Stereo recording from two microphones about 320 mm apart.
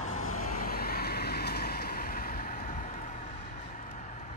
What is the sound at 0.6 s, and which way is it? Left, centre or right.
Vehicle, left.